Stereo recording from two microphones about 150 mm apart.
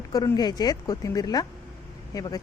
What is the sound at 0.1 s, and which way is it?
Speech, 25° left (ahead or behind).